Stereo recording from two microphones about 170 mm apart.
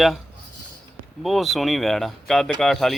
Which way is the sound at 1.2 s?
Centre (ahead or behind).